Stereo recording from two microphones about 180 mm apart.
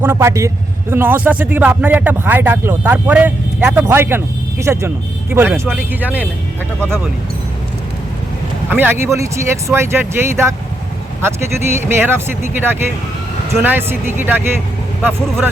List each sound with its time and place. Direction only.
0.0 s speech: 15° right (ahead or behind)
8.7 s speech: 10° right (ahead or behind)